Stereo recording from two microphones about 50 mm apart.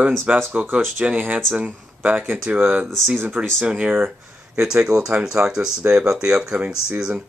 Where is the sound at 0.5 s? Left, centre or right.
Right.